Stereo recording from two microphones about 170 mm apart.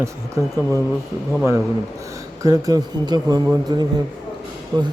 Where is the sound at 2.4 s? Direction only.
20° right (ahead or behind).